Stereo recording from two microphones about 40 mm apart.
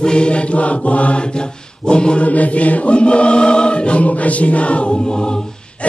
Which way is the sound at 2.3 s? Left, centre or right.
Left.